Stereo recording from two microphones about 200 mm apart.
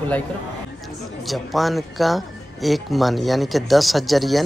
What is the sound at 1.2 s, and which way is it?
Speech, centre (ahead or behind).